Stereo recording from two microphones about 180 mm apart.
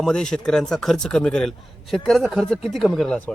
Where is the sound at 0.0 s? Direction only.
5° left (ahead or behind).